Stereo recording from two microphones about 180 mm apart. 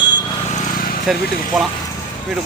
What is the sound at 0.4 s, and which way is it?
Vehicle, 45° left (ahead or behind).